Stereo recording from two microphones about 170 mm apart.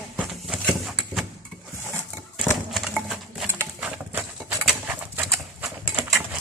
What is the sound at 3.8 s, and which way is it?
Bird, 10° right (ahead or behind).